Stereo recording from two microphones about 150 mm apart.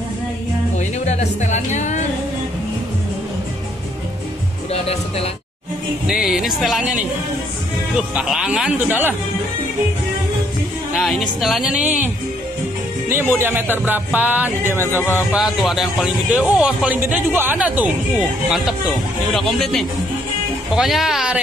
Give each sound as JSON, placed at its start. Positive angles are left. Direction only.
{"t": 0.7, "sound": "speech", "side_deg": 50}
{"t": 6.0, "sound": "speech", "side_deg": 0}
{"t": 8.1, "sound": "speech", "side_deg": -5}
{"t": 11.0, "sound": "speech", "side_deg": 0}
{"t": 13.1, "sound": "speech", "side_deg": -15}
{"t": 19.3, "sound": "speech", "side_deg": 0}